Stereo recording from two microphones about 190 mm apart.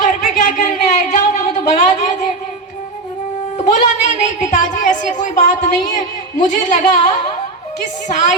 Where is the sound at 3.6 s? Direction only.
35° left (ahead or behind).